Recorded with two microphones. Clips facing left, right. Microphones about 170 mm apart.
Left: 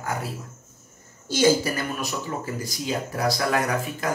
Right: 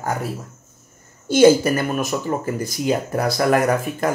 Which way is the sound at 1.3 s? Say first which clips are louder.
Right 8 dB; 55° right (ahead or behind).